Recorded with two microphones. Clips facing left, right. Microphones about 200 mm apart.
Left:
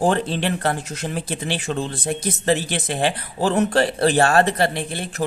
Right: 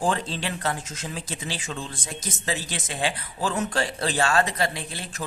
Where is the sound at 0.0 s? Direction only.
60° left (ahead or behind).